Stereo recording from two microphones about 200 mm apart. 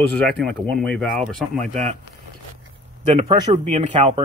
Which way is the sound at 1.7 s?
35° right (ahead or behind).